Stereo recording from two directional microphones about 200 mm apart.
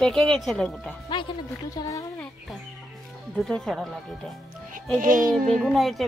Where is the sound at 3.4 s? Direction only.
Centre (ahead or behind).